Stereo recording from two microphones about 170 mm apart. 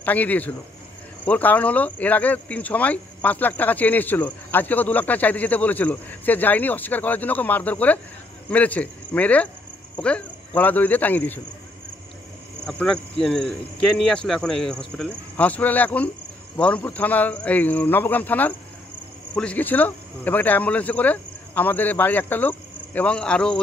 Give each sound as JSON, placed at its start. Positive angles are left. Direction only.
{"t": 0.0, "sound": "speech", "side_deg": 10}
{"t": 12.6, "sound": "speech", "side_deg": 5}